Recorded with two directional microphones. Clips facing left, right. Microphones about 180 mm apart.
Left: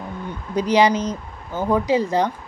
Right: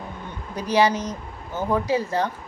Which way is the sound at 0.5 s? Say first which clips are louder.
Left 3 dB; 15° left (ahead or behind).